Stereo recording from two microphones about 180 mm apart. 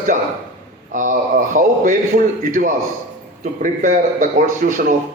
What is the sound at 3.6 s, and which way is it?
A man's voice, 45° right (ahead or behind).